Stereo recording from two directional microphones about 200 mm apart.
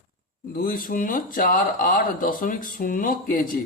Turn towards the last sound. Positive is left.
turn(degrees=45)  # may be behind; listen again after turning